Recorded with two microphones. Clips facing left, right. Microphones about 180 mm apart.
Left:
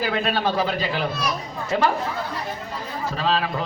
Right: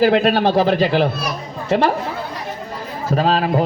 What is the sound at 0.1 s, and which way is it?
Speech, 60° right (ahead or behind).